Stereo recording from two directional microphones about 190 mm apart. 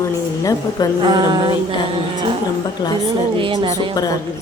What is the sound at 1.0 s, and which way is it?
Speech, 25° right (ahead or behind).